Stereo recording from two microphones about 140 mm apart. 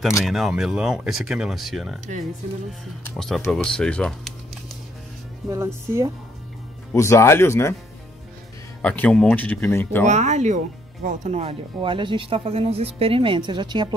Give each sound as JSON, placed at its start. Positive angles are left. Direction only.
{"t": 0.2, "sound": "speech", "side_deg": 0}
{"t": 3.2, "sound": "speech", "side_deg": 0}
{"t": 5.5, "sound": "speech", "side_deg": -20}
{"t": 6.9, "sound": "speech", "side_deg": 20}
{"t": 8.8, "sound": "speech", "side_deg": 10}
{"t": 10.0, "sound": "speech", "side_deg": -55}